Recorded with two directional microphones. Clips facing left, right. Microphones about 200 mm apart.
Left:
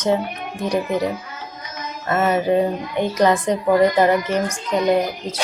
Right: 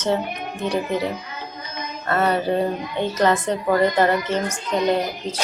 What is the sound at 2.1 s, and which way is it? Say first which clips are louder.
Speech: left 3 dB; 15° left (ahead or behind).